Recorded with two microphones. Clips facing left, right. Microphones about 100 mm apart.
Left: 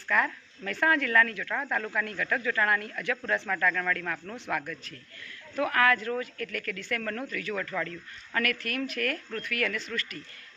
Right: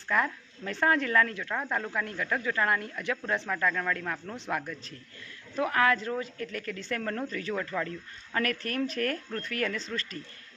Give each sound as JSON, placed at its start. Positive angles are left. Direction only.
{"t": 0.1, "sound": "a woman's voice", "side_deg": -25}